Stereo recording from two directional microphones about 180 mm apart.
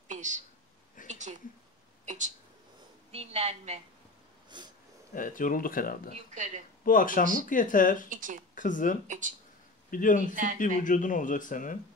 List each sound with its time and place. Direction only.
0.1 s a sound: 45° right (ahead or behind)
2.0 s a woman's voice: 40° right (ahead or behind)
4.5 s speech: 25° right (ahead or behind)
5.1 s speech: 50° left (ahead or behind)
6.1 s a woman's voice: 40° right (ahead or behind)
6.8 s speech: 50° left (ahead or behind)
8.1 s speech: 45° right (ahead or behind)
8.5 s speech: 45° left (ahead or behind)
9.0 s speech: 45° right (ahead or behind)
9.8 s speech: 50° left (ahead or behind)